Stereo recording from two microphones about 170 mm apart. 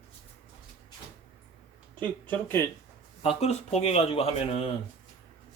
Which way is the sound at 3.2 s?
35° left (ahead or behind).